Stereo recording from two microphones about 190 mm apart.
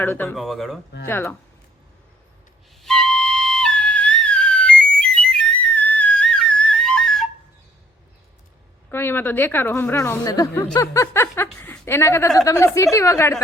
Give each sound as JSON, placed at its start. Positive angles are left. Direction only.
{"t": 0.0, "sound": "a woman's voice", "side_deg": 10}
{"t": 0.3, "sound": "speech", "side_deg": 0}
{"t": 1.0, "sound": "a woman's voice", "side_deg": 10}
{"t": 2.8, "sound": "music", "side_deg": 5}
{"t": 8.9, "sound": "a woman's voice", "side_deg": 10}